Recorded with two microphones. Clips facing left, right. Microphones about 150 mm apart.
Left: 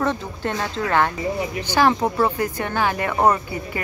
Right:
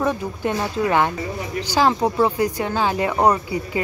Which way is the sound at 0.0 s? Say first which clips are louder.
Right 2 dB; 10° right (ahead or behind).